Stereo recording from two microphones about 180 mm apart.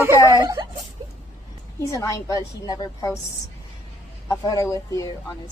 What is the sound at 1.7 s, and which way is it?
A woman's voice, 15° left (ahead or behind).